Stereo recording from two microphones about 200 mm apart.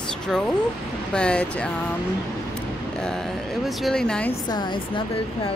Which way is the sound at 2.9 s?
5° left (ahead or behind).